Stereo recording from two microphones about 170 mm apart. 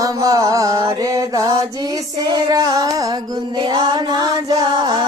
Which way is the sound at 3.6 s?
25° right (ahead or behind).